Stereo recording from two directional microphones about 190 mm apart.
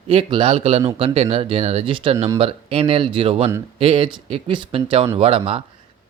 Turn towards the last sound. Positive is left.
turn(degrees=-30)  # may be behind; listen again after turning